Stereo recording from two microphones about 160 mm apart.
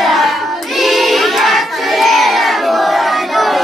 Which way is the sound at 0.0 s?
Centre (ahead or behind).